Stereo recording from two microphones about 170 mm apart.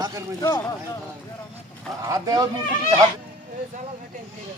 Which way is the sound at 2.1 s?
20° right (ahead or behind).